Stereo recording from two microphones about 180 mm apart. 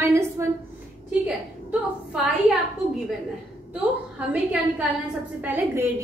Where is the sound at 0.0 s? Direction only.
15° right (ahead or behind).